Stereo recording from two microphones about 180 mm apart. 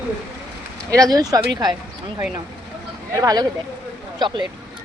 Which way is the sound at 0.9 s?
20° right (ahead or behind).